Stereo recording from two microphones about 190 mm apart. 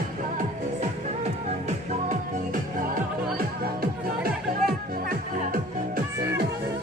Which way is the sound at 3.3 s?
50° right (ahead or behind).